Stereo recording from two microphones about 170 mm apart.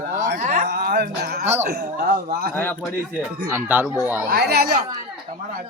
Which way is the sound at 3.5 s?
10° right (ahead or behind).